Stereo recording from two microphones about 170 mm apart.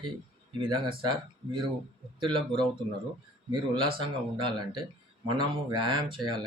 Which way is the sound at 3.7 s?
30° right (ahead or behind).